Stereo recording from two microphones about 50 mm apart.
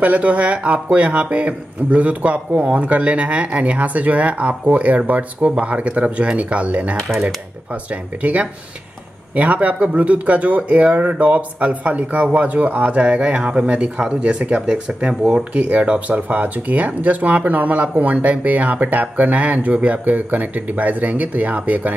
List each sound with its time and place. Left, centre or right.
0.0 s a man's voice: right